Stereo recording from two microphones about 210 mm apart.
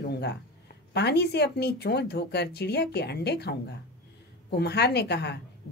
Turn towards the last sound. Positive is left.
turn(degrees=50)  # may be behind; listen again after turning